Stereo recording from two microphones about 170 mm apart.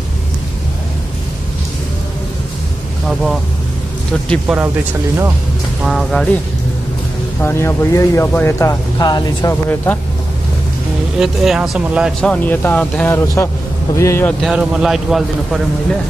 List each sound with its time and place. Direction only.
3.1 s vehicle: centre (ahead or behind)
4.5 s speech: centre (ahead or behind)
5.9 s speech: centre (ahead or behind)
7.4 s speech: 15° left (ahead or behind)
11.1 s speech: 5° right (ahead or behind); by 14.3 s 15° left (ahead or behind)
14.4 s speech: 5° right (ahead or behind)